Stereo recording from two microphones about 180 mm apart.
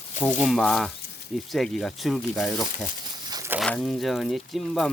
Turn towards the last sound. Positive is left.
turn(degrees=0)  # may be behind; listen again after turning